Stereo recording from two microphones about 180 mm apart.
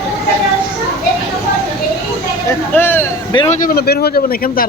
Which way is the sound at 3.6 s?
55° left (ahead or behind).